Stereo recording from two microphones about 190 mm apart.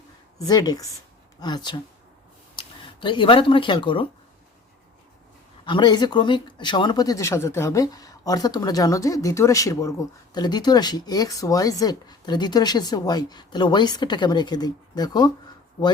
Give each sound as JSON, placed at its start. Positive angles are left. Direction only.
{"t": 0.3, "sound": "speech", "side_deg": 20}
{"t": 5.6, "sound": "speech", "side_deg": 25}